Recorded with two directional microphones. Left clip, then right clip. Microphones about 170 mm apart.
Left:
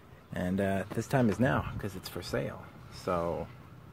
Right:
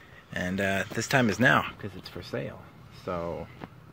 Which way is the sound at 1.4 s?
5° right (ahead or behind).